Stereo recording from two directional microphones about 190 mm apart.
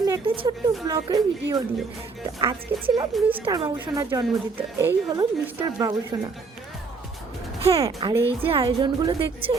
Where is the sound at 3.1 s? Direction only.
10° right (ahead or behind).